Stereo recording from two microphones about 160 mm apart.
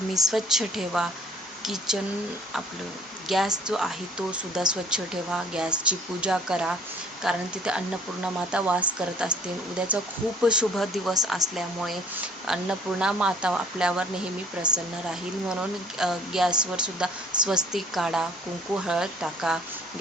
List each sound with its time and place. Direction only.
0.1 s a woman's voice: centre (ahead or behind)
3.2 s a woman's voice: centre (ahead or behind)
16.0 s a woman's voice: centre (ahead or behind)